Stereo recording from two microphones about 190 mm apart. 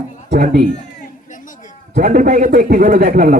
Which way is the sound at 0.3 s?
45° right (ahead or behind).